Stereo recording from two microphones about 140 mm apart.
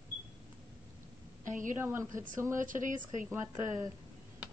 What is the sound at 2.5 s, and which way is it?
Speech, 70° right (ahead or behind).